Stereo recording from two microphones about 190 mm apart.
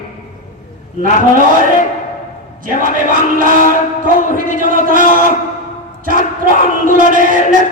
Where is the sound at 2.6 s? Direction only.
45° right (ahead or behind).